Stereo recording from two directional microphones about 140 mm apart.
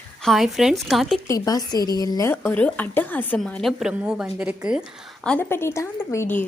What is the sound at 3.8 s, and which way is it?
A woman's voice, 10° right (ahead or behind).